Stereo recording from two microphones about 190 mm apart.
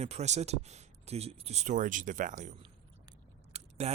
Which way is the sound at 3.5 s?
35° right (ahead or behind).